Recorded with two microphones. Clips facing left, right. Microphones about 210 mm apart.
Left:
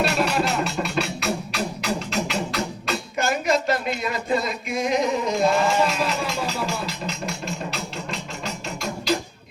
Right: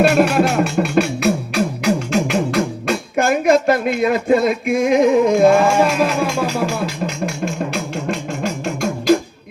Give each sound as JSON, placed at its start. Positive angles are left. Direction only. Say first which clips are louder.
{"t": 0.0, "sound": "music", "louder": "right 9 dB", "side_deg": -55}